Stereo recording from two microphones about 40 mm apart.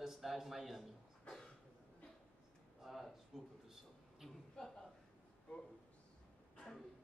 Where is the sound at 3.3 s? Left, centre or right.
Centre.